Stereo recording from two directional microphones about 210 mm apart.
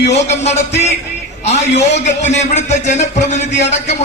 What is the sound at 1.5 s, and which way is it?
Speech, 55° left (ahead or behind).